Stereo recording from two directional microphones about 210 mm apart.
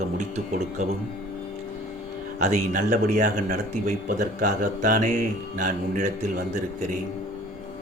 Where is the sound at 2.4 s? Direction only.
35° right (ahead or behind).